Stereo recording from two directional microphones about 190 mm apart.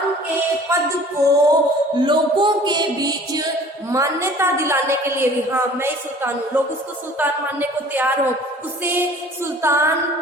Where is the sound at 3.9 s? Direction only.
15° right (ahead or behind).